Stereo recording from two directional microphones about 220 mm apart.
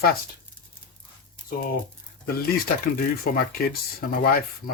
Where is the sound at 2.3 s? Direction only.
45° left (ahead or behind).